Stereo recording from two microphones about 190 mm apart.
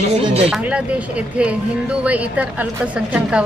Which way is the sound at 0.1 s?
30° right (ahead or behind).